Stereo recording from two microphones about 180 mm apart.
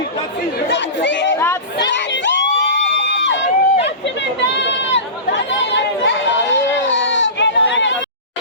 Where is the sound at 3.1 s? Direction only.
90° left.